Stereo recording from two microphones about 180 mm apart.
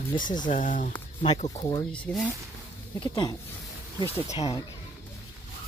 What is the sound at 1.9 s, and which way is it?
Speech, 5° left (ahead or behind).